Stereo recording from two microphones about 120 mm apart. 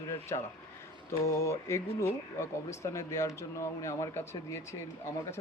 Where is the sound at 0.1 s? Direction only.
25° left (ahead or behind).